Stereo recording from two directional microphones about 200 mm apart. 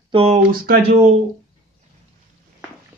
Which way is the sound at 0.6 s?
50° right (ahead or behind).